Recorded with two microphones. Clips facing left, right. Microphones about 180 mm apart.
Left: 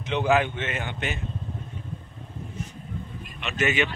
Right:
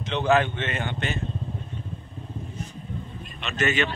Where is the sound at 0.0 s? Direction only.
10° left (ahead or behind).